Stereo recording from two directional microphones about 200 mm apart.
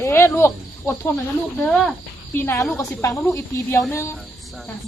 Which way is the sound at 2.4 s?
10° left (ahead or behind).